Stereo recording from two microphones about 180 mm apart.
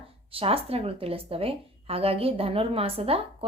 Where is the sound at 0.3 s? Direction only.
30° right (ahead or behind).